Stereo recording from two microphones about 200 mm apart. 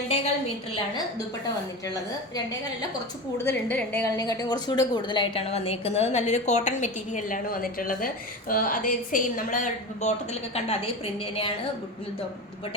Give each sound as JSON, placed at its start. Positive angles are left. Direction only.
{"t": 1.9, "sound": "a woman's voice", "side_deg": 15}